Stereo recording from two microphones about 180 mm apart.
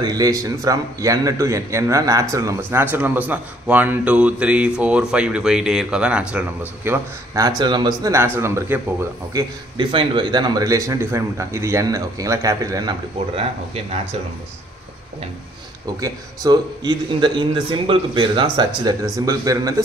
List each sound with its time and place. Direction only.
0.0 s a man's voice: 20° right (ahead or behind)
9.3 s speech: 25° right (ahead or behind)
16.0 s speech: 20° right (ahead or behind)